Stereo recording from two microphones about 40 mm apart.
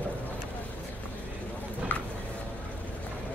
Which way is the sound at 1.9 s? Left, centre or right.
Left.